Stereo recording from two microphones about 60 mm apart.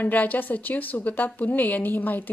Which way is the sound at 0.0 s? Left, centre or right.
Left.